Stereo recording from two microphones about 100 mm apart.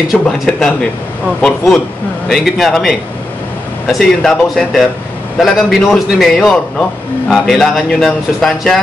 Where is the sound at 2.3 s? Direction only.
Centre (ahead or behind).